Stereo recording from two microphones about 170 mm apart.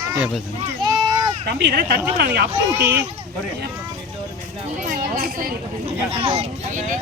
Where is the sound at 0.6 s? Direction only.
25° right (ahead or behind).